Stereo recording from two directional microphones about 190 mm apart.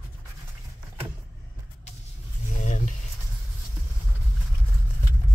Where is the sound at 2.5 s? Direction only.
40° left (ahead or behind).